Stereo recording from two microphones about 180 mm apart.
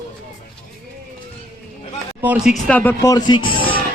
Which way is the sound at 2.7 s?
15° left (ahead or behind).